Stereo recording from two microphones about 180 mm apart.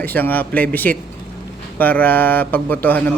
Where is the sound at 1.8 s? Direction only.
10° left (ahead or behind).